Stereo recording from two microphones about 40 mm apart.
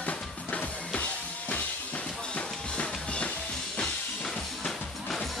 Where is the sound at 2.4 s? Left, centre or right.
Left.